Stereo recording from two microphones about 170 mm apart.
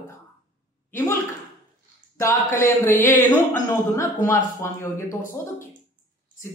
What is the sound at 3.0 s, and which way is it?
Speech, 15° left (ahead or behind).